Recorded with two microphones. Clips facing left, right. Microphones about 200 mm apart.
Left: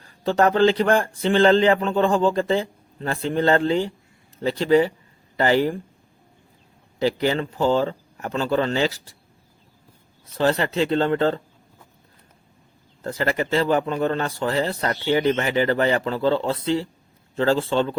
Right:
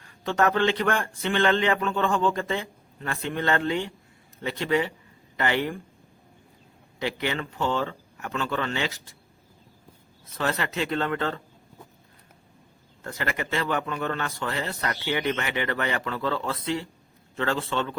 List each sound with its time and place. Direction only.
0.0 s speech: 35° left (ahead or behind)
7.0 s speech: 35° left (ahead or behind)
10.2 s speech: 30° left (ahead or behind)
13.0 s speech: 35° left (ahead or behind)